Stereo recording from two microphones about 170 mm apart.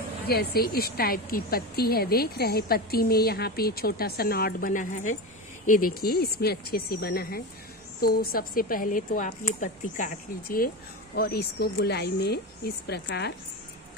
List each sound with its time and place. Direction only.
0.3 s a woman's voice: 65° left (ahead or behind)
11.1 s speech: 65° left (ahead or behind)